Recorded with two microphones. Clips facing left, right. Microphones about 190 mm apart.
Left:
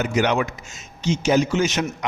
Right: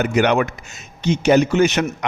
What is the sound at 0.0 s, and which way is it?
A man's voice, 60° right (ahead or behind).